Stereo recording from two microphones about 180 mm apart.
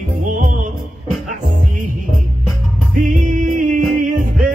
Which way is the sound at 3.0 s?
45° right (ahead or behind).